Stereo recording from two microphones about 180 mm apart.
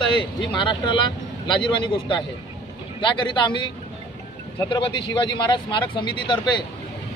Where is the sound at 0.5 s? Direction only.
25° left (ahead or behind).